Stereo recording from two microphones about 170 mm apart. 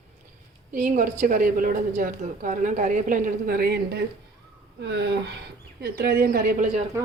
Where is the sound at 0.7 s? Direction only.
50° right (ahead or behind); by 4.0 s 70° right (ahead or behind).